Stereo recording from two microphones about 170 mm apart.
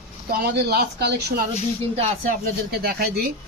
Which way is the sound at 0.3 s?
65° right (ahead or behind).